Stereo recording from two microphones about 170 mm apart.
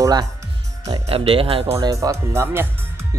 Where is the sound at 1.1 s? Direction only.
35° right (ahead or behind).